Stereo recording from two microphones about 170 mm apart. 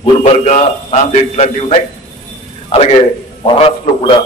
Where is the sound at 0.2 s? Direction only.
45° left (ahead or behind).